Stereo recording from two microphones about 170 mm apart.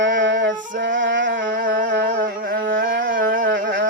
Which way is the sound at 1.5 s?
50° right (ahead or behind).